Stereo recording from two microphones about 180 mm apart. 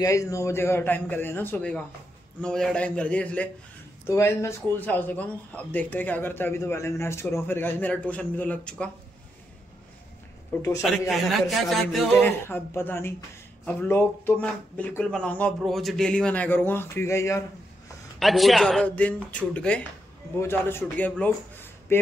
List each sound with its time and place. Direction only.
0.0 s speech: 15° left (ahead or behind)
10.5 s a man's voice: 15° left (ahead or behind)
10.8 s speech: centre (ahead or behind); by 17.4 s 15° left (ahead or behind)
18.2 s a man's voice: centre (ahead or behind)